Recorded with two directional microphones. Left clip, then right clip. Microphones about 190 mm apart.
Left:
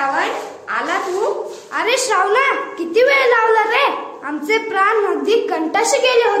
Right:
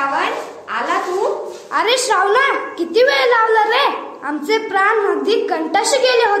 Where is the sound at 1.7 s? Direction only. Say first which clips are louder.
Right 2 dB; 10° right (ahead or behind).